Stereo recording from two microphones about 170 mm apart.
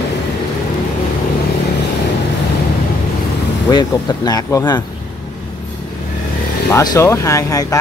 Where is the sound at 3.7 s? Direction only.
25° left (ahead or behind).